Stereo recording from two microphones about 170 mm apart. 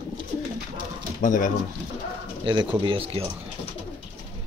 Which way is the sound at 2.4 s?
30° right (ahead or behind).